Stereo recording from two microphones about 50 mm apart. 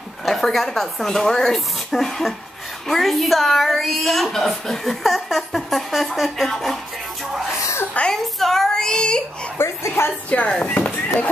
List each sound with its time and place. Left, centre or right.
0.2 s a woman's voice: centre
8.1 s a sound: centre
9.6 s a woman's voice: left
10.6 s speech: left